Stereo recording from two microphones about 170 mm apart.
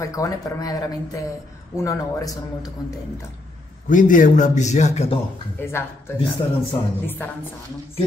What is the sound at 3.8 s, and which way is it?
A man's voice, 50° left (ahead or behind).